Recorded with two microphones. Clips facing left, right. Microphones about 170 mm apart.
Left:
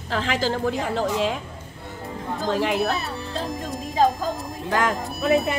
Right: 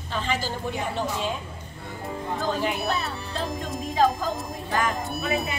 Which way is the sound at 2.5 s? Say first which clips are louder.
Left 6 dB; 90° left.